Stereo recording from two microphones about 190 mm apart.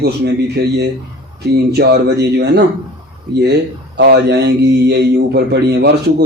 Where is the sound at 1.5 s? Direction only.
60° right (ahead or behind).